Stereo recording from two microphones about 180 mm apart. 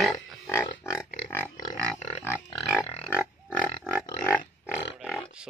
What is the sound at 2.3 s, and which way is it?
Music, 5° right (ahead or behind).